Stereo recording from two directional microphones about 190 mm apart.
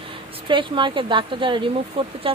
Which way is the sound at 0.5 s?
25° right (ahead or behind).